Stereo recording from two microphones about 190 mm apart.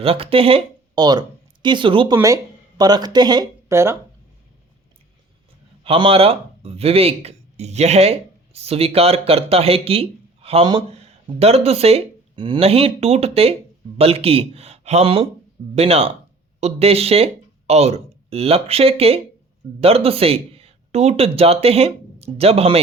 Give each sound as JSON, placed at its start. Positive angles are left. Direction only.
{"t": 0.0, "sound": "speech", "side_deg": -30}
{"t": 5.8, "sound": "speech", "side_deg": -30}